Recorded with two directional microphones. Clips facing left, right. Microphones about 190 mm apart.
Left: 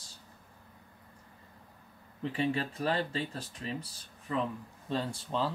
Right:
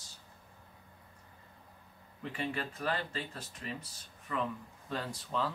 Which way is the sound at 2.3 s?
30° left (ahead or behind).